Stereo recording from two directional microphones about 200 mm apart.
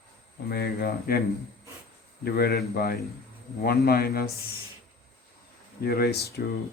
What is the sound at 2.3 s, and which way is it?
Speech, 55° left (ahead or behind).